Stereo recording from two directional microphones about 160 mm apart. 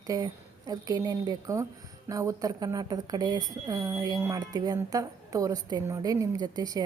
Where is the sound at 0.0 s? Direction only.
20° right (ahead or behind).